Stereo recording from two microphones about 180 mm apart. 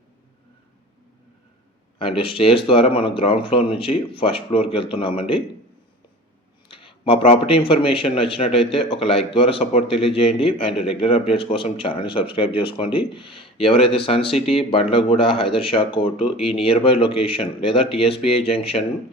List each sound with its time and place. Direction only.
2.0 s a man's voice: 30° left (ahead or behind)
6.7 s a man's voice: 30° left (ahead or behind)